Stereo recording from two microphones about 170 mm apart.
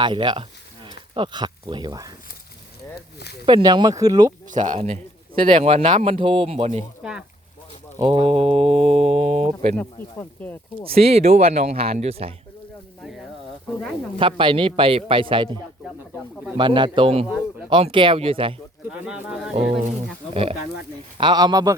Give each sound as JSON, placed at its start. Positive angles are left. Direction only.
{"t": 0.0, "sound": "speech", "side_deg": -25}
{"t": 3.4, "sound": "speech", "side_deg": -25}
{"t": 4.4, "sound": "speech", "side_deg": -45}
{"t": 5.4, "sound": "speech", "side_deg": -30}
{"t": 7.0, "sound": "a sound", "side_deg": -5}
{"t": 7.9, "sound": "speech", "side_deg": -25}
{"t": 8.2, "sound": "speech", "side_deg": -35}
{"t": 9.7, "sound": "speech", "side_deg": 10}
{"t": 10.8, "sound": "speech", "side_deg": -35}
{"t": 14.2, "sound": "speech", "side_deg": -30}
{"t": 16.6, "sound": "speech", "side_deg": -30}
{"t": 19.0, "sound": "speech", "side_deg": -5}
{"t": 21.2, "sound": "speech", "side_deg": -25}